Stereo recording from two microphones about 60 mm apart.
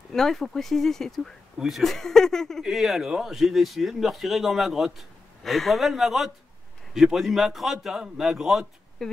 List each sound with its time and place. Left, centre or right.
0.1 s speech: centre
2.6 s speech: centre
9.0 s speech: centre